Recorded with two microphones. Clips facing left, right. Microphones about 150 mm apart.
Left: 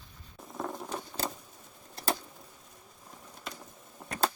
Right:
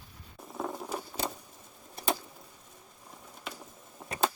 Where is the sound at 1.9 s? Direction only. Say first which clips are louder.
Right 1 dB; 5° right (ahead or behind).